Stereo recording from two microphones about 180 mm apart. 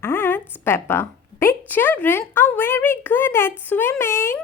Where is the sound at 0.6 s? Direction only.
15° left (ahead or behind).